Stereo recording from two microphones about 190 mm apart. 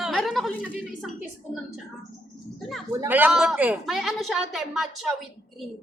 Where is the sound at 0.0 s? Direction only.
Centre (ahead or behind).